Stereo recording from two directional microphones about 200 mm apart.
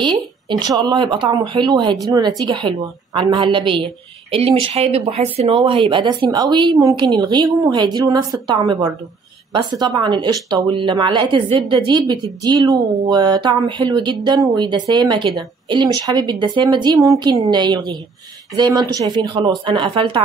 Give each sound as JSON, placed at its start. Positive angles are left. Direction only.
{"t": 0.0, "sound": "speech", "side_deg": -20}